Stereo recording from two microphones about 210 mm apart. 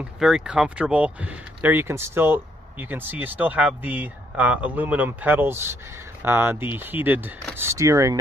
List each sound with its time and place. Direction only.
0.0 s speech: 5° right (ahead or behind)